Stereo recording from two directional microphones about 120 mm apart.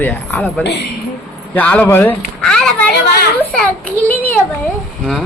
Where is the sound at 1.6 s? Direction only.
15° left (ahead or behind).